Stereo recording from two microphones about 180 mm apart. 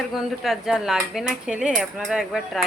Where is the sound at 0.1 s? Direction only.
Centre (ahead or behind).